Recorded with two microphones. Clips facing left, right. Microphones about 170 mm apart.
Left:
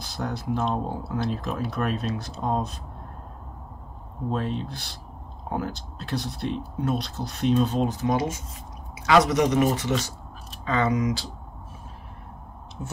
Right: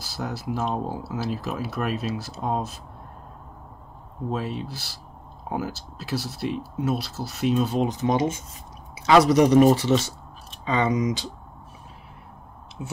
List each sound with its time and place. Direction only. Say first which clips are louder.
0.0 s speech: even; 5° right (ahead or behind)
4.3 s speech: left 1 dB; 5° right (ahead or behind)